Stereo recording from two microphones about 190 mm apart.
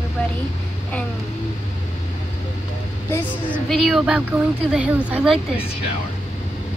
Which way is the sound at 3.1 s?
10° left (ahead or behind).